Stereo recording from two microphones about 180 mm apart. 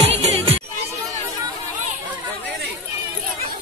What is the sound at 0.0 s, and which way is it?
Music, 35° right (ahead or behind).